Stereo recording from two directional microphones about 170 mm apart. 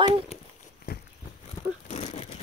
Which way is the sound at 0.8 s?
70° left (ahead or behind).